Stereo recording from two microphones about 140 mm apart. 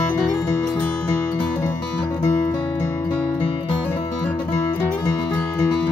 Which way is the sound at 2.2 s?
30° left (ahead or behind).